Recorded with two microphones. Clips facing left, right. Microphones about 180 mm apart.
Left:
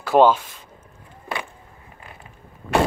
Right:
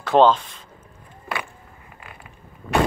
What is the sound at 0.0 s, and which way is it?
Speech, 10° left (ahead or behind).